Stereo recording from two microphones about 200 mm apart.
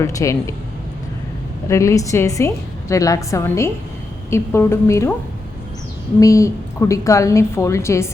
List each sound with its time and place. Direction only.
0.0 s a woman's voice: 15° left (ahead or behind)
1.6 s a woman's voice: 15° left (ahead or behind)
6.1 s a woman's voice: 15° left (ahead or behind)